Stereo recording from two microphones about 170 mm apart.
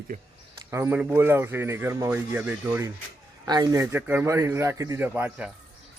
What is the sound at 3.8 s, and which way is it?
Speech, 10° right (ahead or behind).